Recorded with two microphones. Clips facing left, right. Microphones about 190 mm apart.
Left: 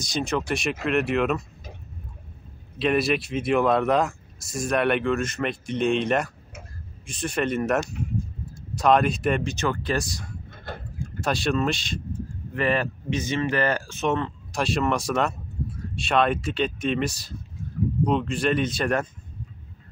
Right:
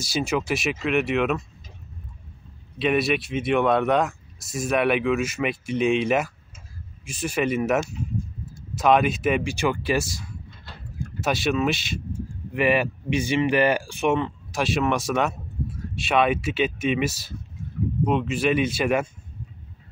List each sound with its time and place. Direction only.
0.0 s speech: 5° right (ahead or behind)
2.8 s speech: centre (ahead or behind)
10.5 s mechanisms: 55° left (ahead or behind)
11.1 s speech: 5° right (ahead or behind)